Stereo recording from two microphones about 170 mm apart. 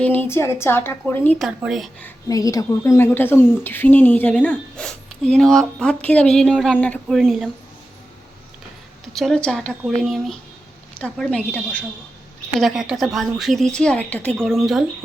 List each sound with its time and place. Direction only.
0.0 s a woman's voice: 10° left (ahead or behind)
1.4 s speech: centre (ahead or behind)
2.0 s a woman's voice: 15° left (ahead or behind); by 7.5 s centre (ahead or behind)
9.1 s a woman's voice: 5° left (ahead or behind)